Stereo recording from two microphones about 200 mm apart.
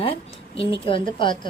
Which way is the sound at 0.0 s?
25° left (ahead or behind).